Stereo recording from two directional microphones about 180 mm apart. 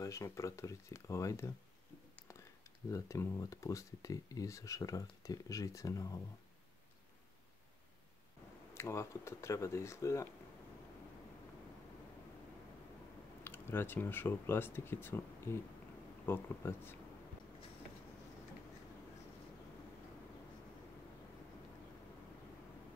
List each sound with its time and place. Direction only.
0.0 s speech: 15° left (ahead or behind)
2.9 s speech: 15° left (ahead or behind)
8.7 s speech: 15° left (ahead or behind)
13.4 s speech: 10° left (ahead or behind)